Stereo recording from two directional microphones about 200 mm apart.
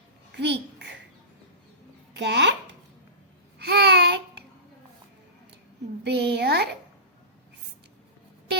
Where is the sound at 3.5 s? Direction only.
55° right (ahead or behind).